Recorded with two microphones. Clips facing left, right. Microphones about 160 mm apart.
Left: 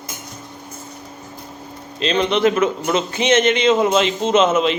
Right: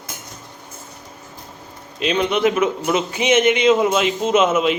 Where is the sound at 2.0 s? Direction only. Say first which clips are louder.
Left 1 dB; 10° right (ahead or behind).